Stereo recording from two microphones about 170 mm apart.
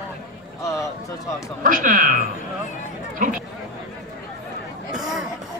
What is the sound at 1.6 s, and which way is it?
Speech, 50° right (ahead or behind).